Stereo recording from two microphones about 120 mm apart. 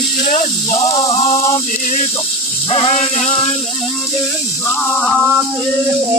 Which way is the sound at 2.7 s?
55° left (ahead or behind).